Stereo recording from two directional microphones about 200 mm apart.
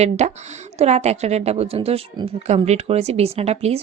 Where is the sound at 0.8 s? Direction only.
35° right (ahead or behind).